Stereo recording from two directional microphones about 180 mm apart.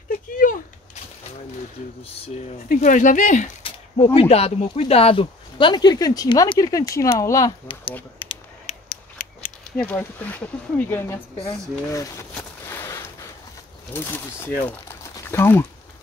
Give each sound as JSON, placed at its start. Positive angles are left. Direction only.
{"t": 0.4, "sound": "a sound", "side_deg": 50}
{"t": 2.7, "sound": "speech", "side_deg": 45}
{"t": 3.6, "sound": "speech", "side_deg": 30}
{"t": 8.8, "sound": "scissors", "side_deg": 45}
{"t": 9.8, "sound": "speech", "side_deg": 10}
{"t": 12.4, "sound": "boat", "side_deg": 15}
{"t": 13.9, "sound": "speech", "side_deg": 10}